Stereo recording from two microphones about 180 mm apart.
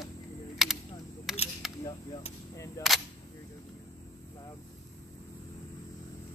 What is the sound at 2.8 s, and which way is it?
Speech, 20° left (ahead or behind).